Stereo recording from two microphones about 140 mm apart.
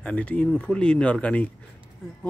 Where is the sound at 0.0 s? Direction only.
10° left (ahead or behind).